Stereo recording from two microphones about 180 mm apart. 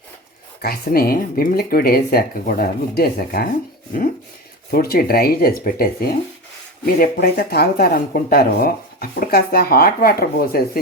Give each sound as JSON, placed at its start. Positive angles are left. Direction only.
{"t": 0.6, "sound": "speech", "side_deg": 55}
{"t": 4.7, "sound": "speech", "side_deg": 55}